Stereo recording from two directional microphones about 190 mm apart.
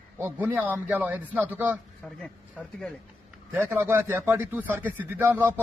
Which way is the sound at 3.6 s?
10° right (ahead or behind).